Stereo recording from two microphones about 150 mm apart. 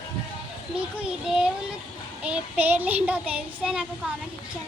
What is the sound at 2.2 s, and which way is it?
Child singing, 10° right (ahead or behind).